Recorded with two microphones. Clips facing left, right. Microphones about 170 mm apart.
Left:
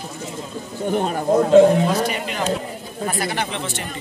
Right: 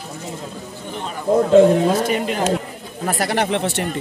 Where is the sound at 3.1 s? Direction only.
75° right (ahead or behind).